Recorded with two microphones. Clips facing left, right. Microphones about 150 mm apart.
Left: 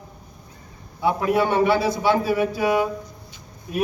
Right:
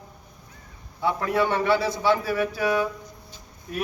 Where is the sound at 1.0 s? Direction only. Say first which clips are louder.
Left 3 dB; 15° left (ahead or behind).